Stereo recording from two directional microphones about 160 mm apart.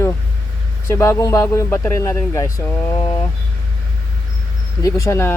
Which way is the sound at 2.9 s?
35° left (ahead or behind).